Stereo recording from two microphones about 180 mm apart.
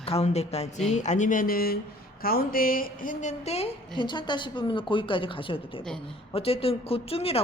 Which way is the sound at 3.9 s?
25° left (ahead or behind).